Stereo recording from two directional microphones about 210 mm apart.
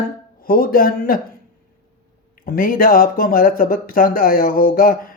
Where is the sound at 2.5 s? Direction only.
40° left (ahead or behind).